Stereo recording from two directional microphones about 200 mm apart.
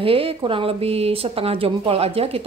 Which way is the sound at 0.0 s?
25° right (ahead or behind).